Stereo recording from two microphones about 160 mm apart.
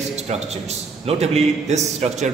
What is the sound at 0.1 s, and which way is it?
A man's voice, 45° right (ahead or behind).